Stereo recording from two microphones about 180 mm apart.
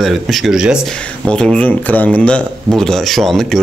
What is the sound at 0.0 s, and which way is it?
Speech, centre (ahead or behind).